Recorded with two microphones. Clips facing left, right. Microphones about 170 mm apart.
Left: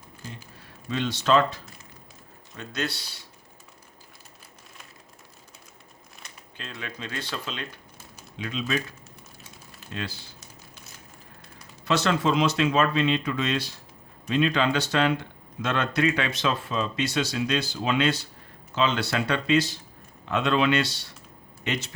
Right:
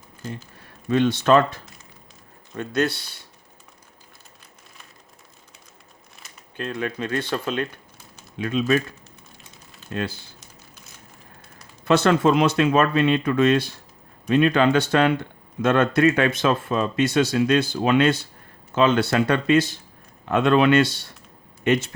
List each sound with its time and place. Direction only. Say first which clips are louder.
0.9 s speech: right 6 dB; 55° right (ahead or behind)
6.6 s speech: right 10 dB; 50° right (ahead or behind)
9.9 s speech: right 7 dB; 50° right (ahead or behind)
11.9 s speech: right 6 dB; 55° right (ahead or behind)